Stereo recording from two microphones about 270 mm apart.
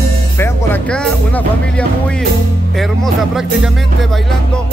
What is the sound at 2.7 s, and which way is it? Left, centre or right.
Speech, centre.